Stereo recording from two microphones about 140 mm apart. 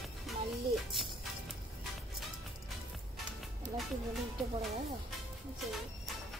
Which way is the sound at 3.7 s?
Centre (ahead or behind).